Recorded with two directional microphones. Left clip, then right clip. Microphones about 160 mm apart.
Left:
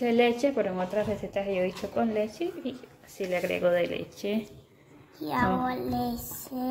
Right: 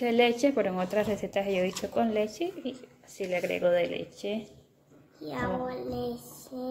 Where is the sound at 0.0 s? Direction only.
15° right (ahead or behind).